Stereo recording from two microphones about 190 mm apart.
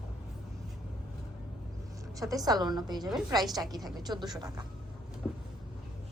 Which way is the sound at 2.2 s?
20° right (ahead or behind).